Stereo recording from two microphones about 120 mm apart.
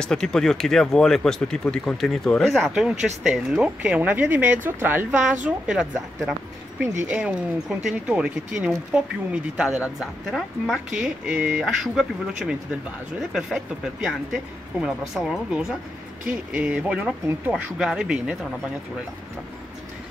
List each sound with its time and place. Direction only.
0.0 s speech: 5° left (ahead or behind)
6.8 s speech: 20° right (ahead or behind)
7.1 s speech: 10° right (ahead or behind)